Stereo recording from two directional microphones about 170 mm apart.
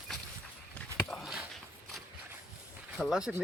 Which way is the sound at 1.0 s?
Centre (ahead or behind).